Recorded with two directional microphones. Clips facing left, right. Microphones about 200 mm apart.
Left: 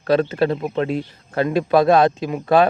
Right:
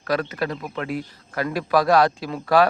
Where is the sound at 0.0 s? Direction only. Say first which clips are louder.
Left 7 dB; 25° left (ahead or behind).